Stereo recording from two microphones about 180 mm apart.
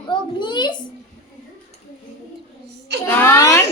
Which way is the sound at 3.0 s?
10° left (ahead or behind).